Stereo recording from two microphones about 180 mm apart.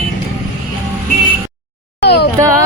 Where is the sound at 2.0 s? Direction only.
65° left (ahead or behind).